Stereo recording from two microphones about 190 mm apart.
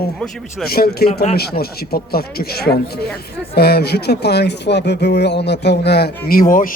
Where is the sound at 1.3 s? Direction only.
55° left (ahead or behind).